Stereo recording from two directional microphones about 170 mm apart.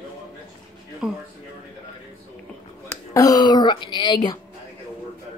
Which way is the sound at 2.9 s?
20° left (ahead or behind).